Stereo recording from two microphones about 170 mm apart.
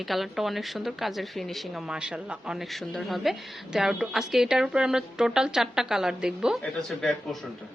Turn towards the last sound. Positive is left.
turn(degrees=0)  # may be behind; listen again after turning